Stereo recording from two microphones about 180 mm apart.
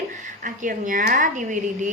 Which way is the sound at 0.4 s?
45° right (ahead or behind).